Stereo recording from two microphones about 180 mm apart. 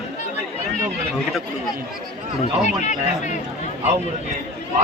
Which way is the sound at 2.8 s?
40° left (ahead or behind).